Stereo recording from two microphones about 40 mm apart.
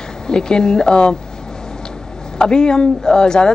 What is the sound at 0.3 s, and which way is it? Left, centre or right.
Speech, centre.